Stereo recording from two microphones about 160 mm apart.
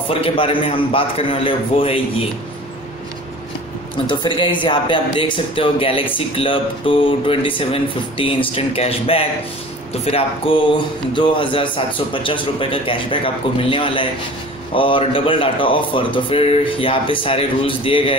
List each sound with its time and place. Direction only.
0.1 s speech: 35° left (ahead or behind)
4.1 s speech: 30° left (ahead or behind)